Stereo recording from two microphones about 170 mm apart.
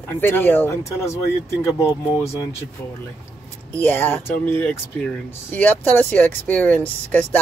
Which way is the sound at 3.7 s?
10° left (ahead or behind).